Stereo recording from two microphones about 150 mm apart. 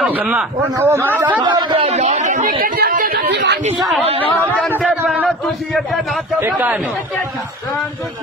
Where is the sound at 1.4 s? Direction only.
35° right (ahead or behind).